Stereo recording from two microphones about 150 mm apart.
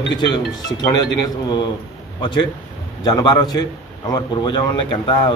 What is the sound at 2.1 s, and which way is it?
A man's voice, 30° left (ahead or behind).